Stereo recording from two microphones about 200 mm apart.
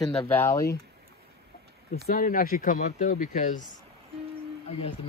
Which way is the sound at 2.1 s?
45° left (ahead or behind).